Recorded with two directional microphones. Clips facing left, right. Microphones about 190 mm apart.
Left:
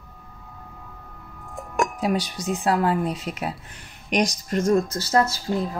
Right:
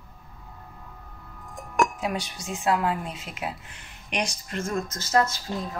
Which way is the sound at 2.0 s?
35° left (ahead or behind).